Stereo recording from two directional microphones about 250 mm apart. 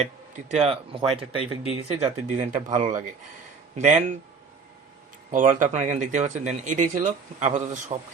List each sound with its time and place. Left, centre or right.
0.0 s speech: right
5.3 s speech: right